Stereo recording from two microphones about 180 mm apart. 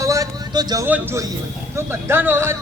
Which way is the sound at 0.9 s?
10° right (ahead or behind).